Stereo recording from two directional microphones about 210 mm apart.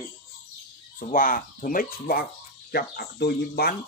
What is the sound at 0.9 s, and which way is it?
Speech, 40° left (ahead or behind).